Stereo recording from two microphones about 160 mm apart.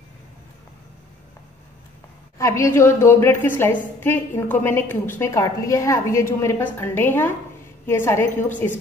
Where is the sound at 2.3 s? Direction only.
20° left (ahead or behind).